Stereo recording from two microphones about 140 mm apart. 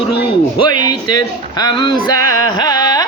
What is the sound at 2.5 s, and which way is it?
Carnatic music, 25° left (ahead or behind).